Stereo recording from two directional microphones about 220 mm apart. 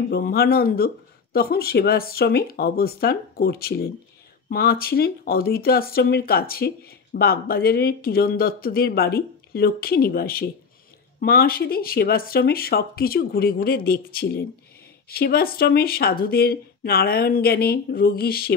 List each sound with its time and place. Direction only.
0.1 s speech: 45° left (ahead or behind)